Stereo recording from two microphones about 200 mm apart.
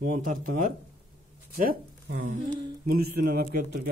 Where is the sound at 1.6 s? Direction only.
50° right (ahead or behind).